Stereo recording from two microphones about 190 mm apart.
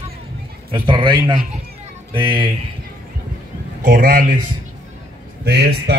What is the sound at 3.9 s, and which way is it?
Speech, 45° right (ahead or behind).